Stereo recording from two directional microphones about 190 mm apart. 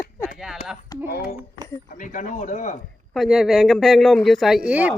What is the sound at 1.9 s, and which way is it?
Speech, 45° left (ahead or behind).